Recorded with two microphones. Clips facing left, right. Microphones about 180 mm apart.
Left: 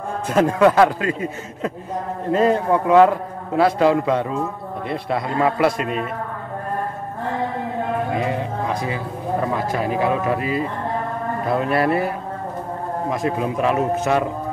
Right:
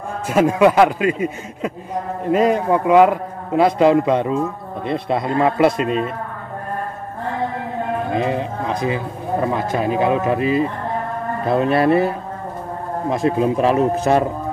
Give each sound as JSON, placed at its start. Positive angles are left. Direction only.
{"t": 0.3, "sound": "a man's voice", "side_deg": -10}
{"t": 8.1, "sound": "a man's voice", "side_deg": -25}
{"t": 13.1, "sound": "speech", "side_deg": -25}